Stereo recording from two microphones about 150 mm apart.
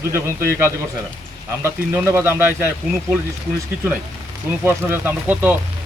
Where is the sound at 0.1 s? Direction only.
15° right (ahead or behind).